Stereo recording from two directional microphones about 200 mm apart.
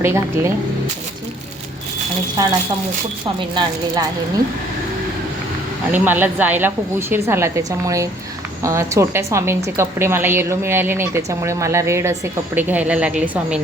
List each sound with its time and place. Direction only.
0.0 s a woman's voice: 15° right (ahead or behind)
2.4 s a woman's voice: 20° right (ahead or behind)
5.9 s a woman's voice: 10° right (ahead or behind)